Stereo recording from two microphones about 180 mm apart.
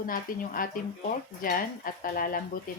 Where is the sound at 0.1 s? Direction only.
50° left (ahead or behind).